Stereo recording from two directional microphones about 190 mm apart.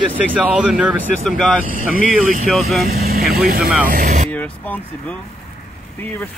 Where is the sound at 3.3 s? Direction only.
55° right (ahead or behind).